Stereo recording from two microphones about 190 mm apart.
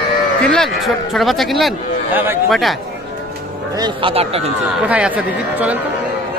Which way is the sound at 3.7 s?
25° right (ahead or behind).